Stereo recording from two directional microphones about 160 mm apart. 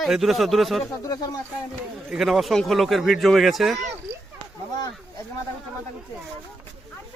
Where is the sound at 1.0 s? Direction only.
20° left (ahead or behind).